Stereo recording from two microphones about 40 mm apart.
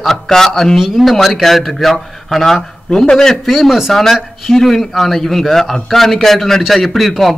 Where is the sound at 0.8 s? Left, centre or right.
Centre.